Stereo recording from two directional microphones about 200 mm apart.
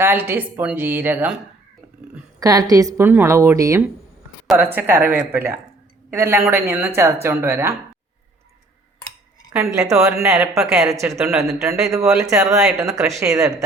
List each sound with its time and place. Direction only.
0.0 s a woman's voice: 10° right (ahead or behind)
2.4 s a woman's voice: 20° right (ahead or behind)
9.5 s a woman's voice: 15° right (ahead or behind)
10.8 s a woman's voice: 15° right (ahead or behind)